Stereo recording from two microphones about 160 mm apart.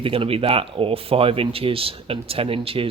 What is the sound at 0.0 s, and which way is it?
Speech, 35° right (ahead or behind).